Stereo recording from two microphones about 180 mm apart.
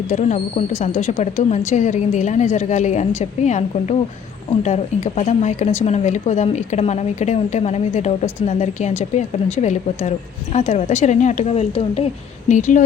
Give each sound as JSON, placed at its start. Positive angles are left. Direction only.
{"t": 0.1, "sound": "speech", "side_deg": 40}
{"t": 12.5, "sound": "a woman's voice", "side_deg": 45}